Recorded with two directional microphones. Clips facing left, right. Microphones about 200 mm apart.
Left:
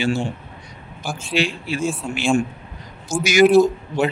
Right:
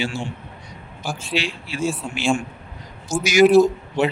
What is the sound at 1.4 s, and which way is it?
Speech, 50° left (ahead or behind).